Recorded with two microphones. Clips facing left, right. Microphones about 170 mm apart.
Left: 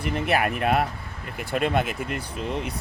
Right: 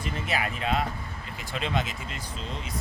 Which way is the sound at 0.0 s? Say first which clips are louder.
Left 7 dB; 60° left (ahead or behind).